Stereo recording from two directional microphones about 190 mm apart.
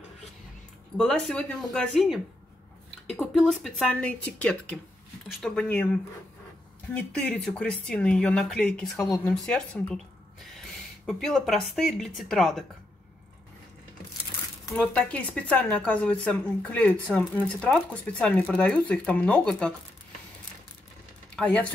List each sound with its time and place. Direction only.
0.9 s speech: 5° left (ahead or behind)
3.2 s speech: centre (ahead or behind)
6.9 s speech: 5° left (ahead or behind)
9.0 s speech: 15° left (ahead or behind)
9.3 s speech: 5° left (ahead or behind)
11.1 s speech: centre (ahead or behind)
14.8 s speech: 5° left (ahead or behind)
21.4 s speech: 10° left (ahead or behind)